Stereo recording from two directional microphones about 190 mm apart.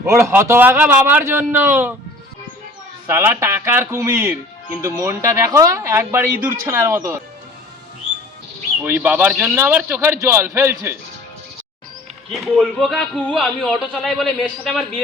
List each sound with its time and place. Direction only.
0.0 s speech: 15° right (ahead or behind)
3.1 s speech: 15° right (ahead or behind)
8.8 s speech: 10° right (ahead or behind)
12.3 s speech: centre (ahead or behind)